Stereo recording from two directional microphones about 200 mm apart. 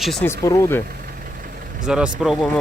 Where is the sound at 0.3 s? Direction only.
15° left (ahead or behind).